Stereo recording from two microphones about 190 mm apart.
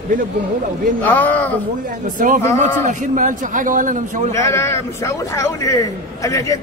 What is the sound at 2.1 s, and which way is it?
A man's voice, 45° right (ahead or behind).